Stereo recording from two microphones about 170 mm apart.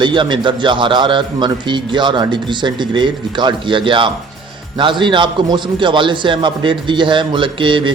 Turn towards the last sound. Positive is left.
turn(degrees=-30)  # may be behind; listen again after turning